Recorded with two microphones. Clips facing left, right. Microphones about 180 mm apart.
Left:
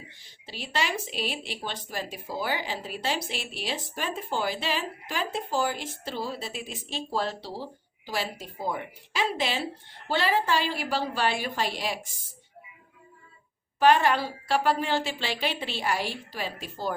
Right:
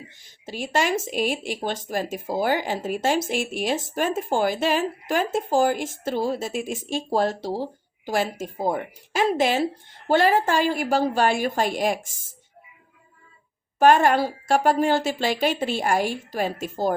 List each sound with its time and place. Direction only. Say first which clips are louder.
0.4 s speech: right 7 dB; 45° right (ahead or behind)
13.7 s speech: right 4 dB; 45° right (ahead or behind)